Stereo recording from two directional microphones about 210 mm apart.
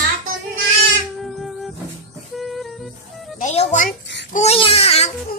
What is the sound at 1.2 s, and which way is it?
Music, centre (ahead or behind).